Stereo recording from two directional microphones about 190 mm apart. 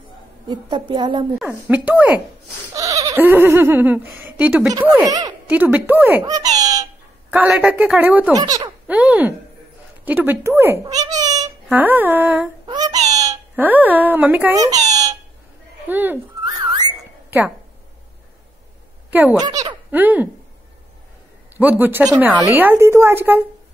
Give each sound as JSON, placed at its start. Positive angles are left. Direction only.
{"t": 0.5, "sound": "a woman's voice", "side_deg": -25}
{"t": 1.4, "sound": "a woman's voice", "side_deg": -10}
{"t": 6.2, "sound": "a child's voice", "side_deg": -20}
{"t": 7.2, "sound": "a woman's voice", "side_deg": -5}
{"t": 8.4, "sound": "a woman's voice", "side_deg": -20}
{"t": 8.8, "sound": "a woman's voice", "side_deg": -5}
{"t": 12.6, "sound": "a sound", "side_deg": -20}
{"t": 15.9, "sound": "a woman's voice", "side_deg": -10}
{"t": 19.0, "sound": "a sound", "side_deg": -10}
{"t": 19.3, "sound": "speech", "side_deg": -20}
{"t": 19.9, "sound": "a woman's voice", "side_deg": -10}
{"t": 21.5, "sound": "a woman's voice", "side_deg": -10}